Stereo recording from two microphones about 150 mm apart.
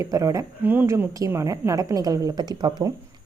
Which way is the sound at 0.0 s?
20° right (ahead or behind).